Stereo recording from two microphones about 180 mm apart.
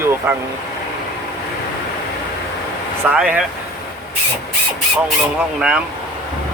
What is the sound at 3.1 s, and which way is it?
Speech, 5° right (ahead or behind).